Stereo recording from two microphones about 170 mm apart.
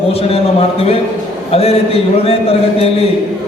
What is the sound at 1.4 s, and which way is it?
A man's voice, 35° left (ahead or behind).